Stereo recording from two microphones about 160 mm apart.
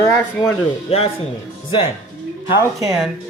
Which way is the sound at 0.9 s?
40° left (ahead or behind).